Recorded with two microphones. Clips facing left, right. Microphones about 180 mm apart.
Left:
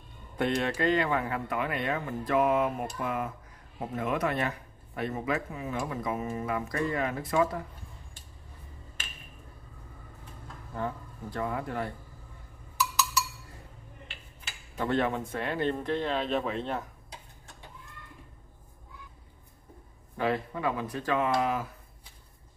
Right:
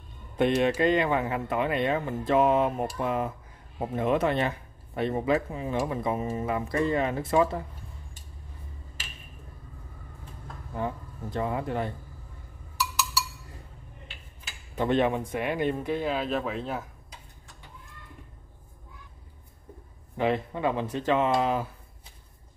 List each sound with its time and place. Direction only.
0.4 s speech: 20° right (ahead or behind)
10.7 s speech: 20° right (ahead or behind)
14.8 s speech: 20° right (ahead or behind); by 16.8 s 5° right (ahead or behind)
20.2 s speech: 20° right (ahead or behind)